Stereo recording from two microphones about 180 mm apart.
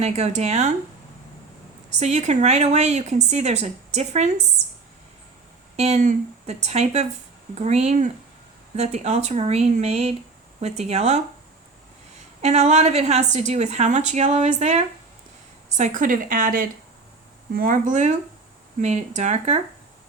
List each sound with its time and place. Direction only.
0.0 s a woman's voice: 40° right (ahead or behind)
2.0 s a woman's voice: 40° right (ahead or behind)
5.7 s a woman's voice: 35° right (ahead or behind)
12.4 s a woman's voice: 40° right (ahead or behind)